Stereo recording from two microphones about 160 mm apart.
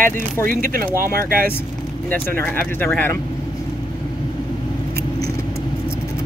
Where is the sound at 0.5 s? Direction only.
60° right (ahead or behind).